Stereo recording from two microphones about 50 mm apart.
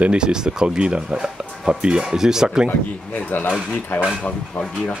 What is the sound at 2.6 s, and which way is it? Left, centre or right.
Speech, left.